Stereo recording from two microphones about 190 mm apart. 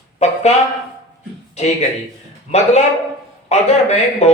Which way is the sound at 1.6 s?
35° left (ahead or behind).